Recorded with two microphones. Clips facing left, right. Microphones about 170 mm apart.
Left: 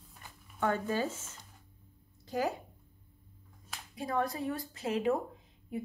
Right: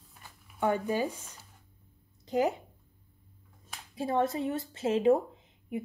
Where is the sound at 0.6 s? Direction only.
15° right (ahead or behind).